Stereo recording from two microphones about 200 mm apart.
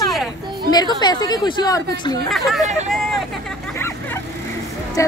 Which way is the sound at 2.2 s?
Centre (ahead or behind).